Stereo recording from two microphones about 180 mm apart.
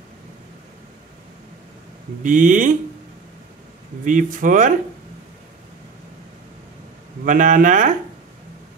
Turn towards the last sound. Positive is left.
turn(degrees=-45)  # may be behind; listen again after turning